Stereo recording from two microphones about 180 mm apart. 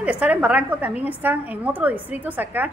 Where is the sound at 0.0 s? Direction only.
5° right (ahead or behind).